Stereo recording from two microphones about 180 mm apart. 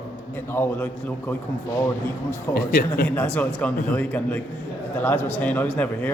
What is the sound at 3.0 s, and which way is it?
A man's voice, 5° left (ahead or behind).